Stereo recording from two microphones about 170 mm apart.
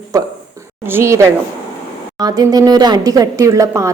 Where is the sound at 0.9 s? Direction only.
15° right (ahead or behind).